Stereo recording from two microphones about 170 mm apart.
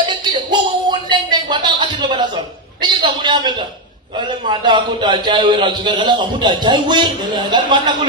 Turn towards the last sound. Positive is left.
turn(degrees=-25)  # may be behind; listen again after turning